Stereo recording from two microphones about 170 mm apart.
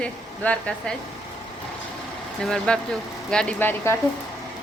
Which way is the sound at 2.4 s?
5° left (ahead or behind).